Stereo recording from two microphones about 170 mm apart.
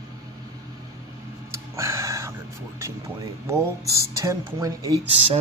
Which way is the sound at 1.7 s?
15° right (ahead or behind).